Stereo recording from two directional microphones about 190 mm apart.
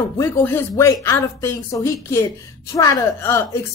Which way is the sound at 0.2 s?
15° left (ahead or behind).